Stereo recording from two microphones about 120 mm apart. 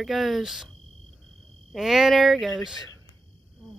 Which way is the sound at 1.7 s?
5° right (ahead or behind).